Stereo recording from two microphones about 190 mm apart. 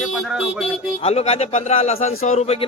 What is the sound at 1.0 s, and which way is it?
Speech, 35° left (ahead or behind).